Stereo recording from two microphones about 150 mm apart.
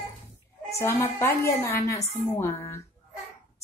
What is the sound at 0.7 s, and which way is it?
A woman's voice, 20° left (ahead or behind).